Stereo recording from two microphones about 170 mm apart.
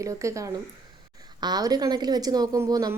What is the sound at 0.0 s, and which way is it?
Speech, 20° right (ahead or behind).